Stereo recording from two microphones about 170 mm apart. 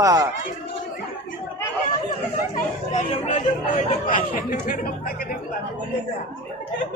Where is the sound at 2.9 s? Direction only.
45° left (ahead or behind).